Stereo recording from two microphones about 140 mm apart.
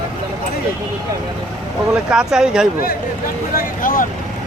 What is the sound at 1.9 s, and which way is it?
Speech, 5° right (ahead or behind).